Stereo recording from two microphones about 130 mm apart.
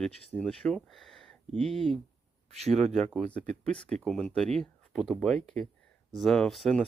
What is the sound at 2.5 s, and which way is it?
Speech, 55° right (ahead or behind).